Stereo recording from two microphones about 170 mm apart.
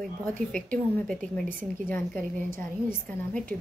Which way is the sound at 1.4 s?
50° right (ahead or behind).